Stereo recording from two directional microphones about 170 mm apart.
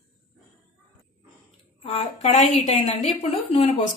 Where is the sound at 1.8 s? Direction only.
40° left (ahead or behind).